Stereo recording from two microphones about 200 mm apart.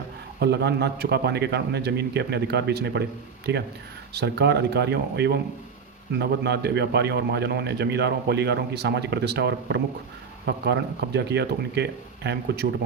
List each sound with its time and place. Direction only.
0.3 s a man's voice: 55° right (ahead or behind)